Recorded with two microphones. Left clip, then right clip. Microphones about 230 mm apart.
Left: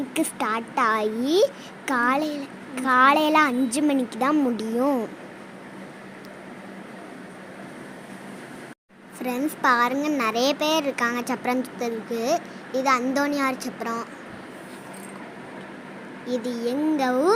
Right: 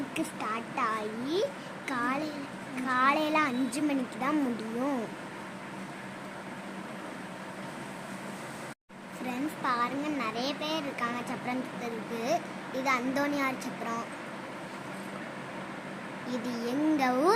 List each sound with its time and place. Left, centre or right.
0.1 s speech: left
9.2 s speech: left
16.3 s speech: centre